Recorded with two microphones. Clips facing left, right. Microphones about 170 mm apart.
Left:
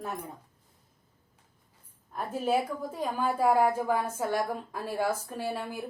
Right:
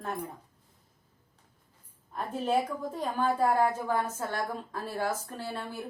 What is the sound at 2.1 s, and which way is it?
A woman's voice, 5° left (ahead or behind).